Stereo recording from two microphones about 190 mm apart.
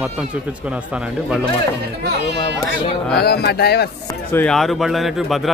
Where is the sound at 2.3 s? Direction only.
30° left (ahead or behind).